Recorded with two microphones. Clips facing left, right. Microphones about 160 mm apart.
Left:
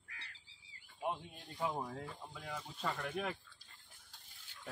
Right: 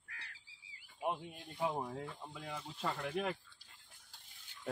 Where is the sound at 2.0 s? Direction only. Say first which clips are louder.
Right 2 dB; 10° right (ahead or behind).